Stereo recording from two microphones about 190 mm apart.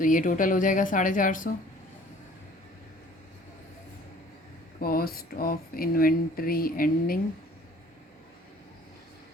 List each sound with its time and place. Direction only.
0.0 s speech: 45° left (ahead or behind)
4.8 s speech: 50° left (ahead or behind)